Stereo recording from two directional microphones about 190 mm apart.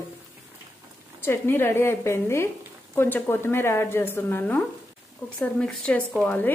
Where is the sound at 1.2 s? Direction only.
10° left (ahead or behind).